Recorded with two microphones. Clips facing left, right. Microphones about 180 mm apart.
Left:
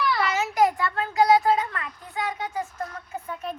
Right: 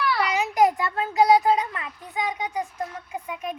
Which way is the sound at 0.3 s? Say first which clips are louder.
Right 3 dB; 15° right (ahead or behind).